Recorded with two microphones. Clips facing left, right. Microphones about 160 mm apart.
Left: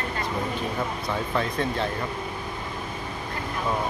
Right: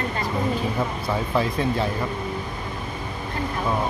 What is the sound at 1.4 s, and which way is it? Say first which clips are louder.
Speech: right 4 dB; 5° right (ahead or behind).